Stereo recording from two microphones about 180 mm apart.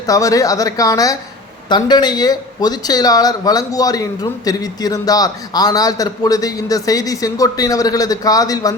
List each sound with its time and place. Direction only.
0.1 s speech: 20° left (ahead or behind)